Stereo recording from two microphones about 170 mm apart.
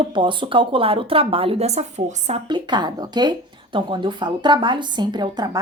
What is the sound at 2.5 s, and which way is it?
A woman's voice, 25° right (ahead or behind).